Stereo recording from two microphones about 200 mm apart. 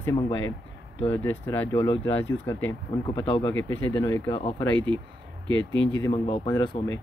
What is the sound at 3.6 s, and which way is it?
Speech, 10° left (ahead or behind).